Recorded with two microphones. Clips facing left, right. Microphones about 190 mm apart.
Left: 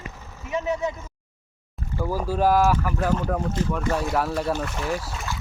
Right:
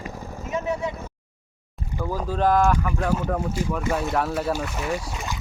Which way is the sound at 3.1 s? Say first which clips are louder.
Even; 5° right (ahead or behind).